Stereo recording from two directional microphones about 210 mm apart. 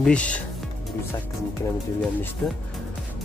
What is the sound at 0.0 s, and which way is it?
Speech, 5° left (ahead or behind).